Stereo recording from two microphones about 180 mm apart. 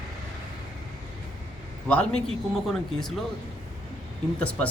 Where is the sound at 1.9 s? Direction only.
5° left (ahead or behind).